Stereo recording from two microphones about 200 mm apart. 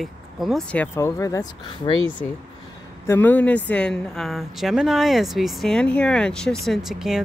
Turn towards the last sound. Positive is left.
turn(degrees=0)  # may be behind; listen again after turning